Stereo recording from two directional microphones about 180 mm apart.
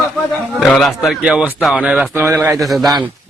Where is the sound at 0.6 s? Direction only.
Centre (ahead or behind).